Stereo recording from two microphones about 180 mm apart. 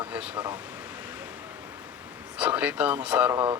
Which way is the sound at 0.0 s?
10° right (ahead or behind).